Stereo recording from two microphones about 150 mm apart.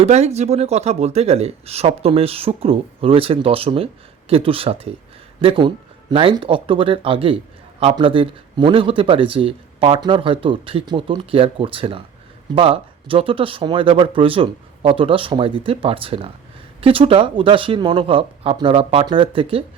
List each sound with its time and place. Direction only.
0.0 s a man's voice: 45° right (ahead or behind)